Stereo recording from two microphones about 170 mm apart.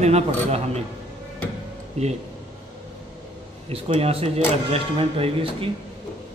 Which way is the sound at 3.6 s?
35° right (ahead or behind).